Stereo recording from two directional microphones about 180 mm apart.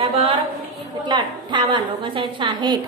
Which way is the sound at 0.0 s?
30° right (ahead or behind).